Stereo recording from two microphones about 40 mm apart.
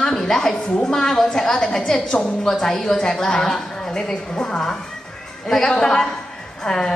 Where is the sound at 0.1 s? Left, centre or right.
Centre.